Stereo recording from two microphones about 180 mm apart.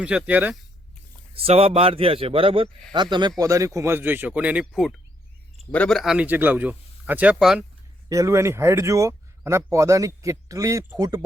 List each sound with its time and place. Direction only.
0.0 s speech: 5° right (ahead or behind)
1.4 s a man's voice: 35° right (ahead or behind); by 7.6 s 5° right (ahead or behind)
8.1 s speech: 15° right (ahead or behind)